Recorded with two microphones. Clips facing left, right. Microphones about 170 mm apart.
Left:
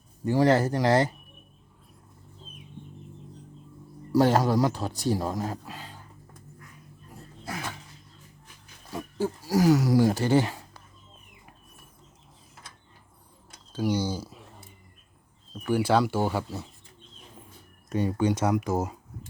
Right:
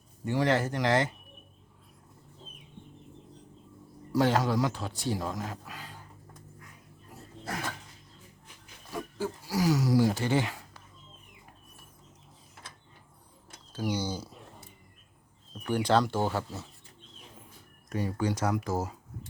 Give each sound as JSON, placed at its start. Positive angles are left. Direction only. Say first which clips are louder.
{"t": 0.3, "sound": "speech", "louder": "left 5 dB", "side_deg": 35}
{"t": 4.1, "sound": "speech", "louder": "left 4 dB", "side_deg": 40}
{"t": 8.9, "sound": "pig", "louder": "left 4 dB", "side_deg": 25}
{"t": 9.5, "sound": "speech", "louder": "left 5 dB", "side_deg": 50}
{"t": 13.8, "sound": "speech", "louder": "left 5 dB", "side_deg": 10}
{"t": 15.6, "sound": "speech", "louder": "left 3 dB", "side_deg": 5}
{"t": 17.8, "sound": "speech", "louder": "left 5 dB", "side_deg": 25}